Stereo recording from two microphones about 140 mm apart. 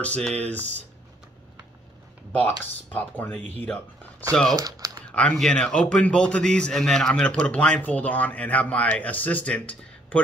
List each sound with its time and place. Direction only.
0.0 s a man's voice: 10° left (ahead or behind)
2.4 s a man's voice: 10° left (ahead or behind)
4.5 s speech: 25° right (ahead or behind)
5.1 s a man's voice: 5° left (ahead or behind)